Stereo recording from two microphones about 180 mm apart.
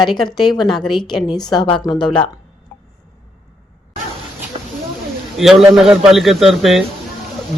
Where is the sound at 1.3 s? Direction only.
20° left (ahead or behind).